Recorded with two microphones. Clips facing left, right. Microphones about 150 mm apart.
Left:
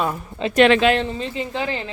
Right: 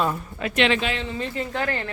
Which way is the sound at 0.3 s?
25° left (ahead or behind).